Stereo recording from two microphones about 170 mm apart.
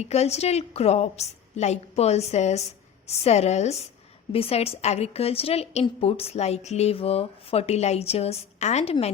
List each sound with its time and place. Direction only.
0.0 s a woman's voice: 40° left (ahead or behind)